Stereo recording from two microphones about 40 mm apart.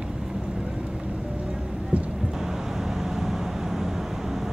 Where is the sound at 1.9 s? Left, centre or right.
Right.